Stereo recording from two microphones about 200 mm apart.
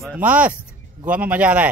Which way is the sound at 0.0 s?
5° right (ahead or behind).